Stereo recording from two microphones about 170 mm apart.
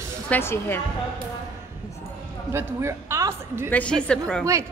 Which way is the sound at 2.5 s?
15° right (ahead or behind).